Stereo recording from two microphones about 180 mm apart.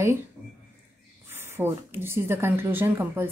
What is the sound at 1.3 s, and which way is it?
Speech, 15° right (ahead or behind).